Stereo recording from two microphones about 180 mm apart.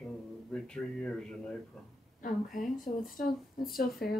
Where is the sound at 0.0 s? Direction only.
5° left (ahead or behind).